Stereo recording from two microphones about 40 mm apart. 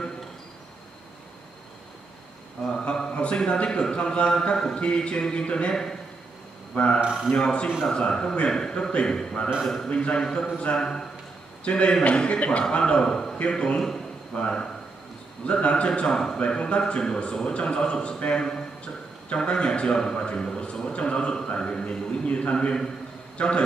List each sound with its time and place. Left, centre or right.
2.6 s a sound: left
3.3 s speech: left
6.7 s a man's voice: left